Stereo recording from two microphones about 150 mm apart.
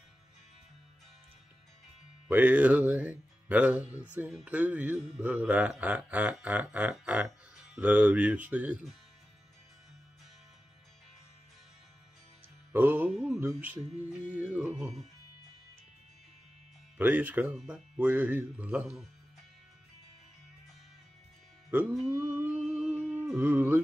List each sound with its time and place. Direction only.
2.2 s speech: 10° right (ahead or behind)
12.7 s music: 15° right (ahead or behind)
13.4 s speech: 10° right (ahead or behind)
17.0 s speech: 10° right (ahead or behind)
17.5 s speech: centre (ahead or behind)
22.3 s humming: 10° right (ahead or behind)